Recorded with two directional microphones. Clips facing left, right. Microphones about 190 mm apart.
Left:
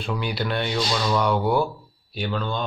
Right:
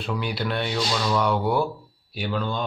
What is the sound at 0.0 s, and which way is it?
Speech, centre (ahead or behind).